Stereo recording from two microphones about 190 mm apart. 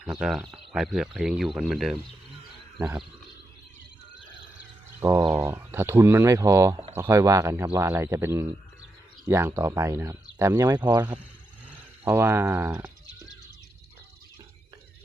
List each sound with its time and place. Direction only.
0.0 s speech: centre (ahead or behind)
4.9 s speech: 15° right (ahead or behind)